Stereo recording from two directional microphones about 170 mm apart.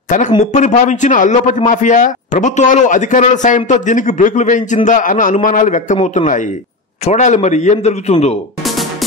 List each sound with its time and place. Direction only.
0.4 s a man's voice: 45° left (ahead or behind)